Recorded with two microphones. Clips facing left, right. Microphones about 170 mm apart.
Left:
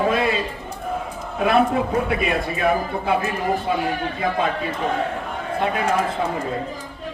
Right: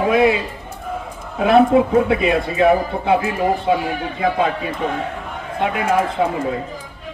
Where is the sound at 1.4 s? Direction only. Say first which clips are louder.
Right 6 dB; 25° right (ahead or behind).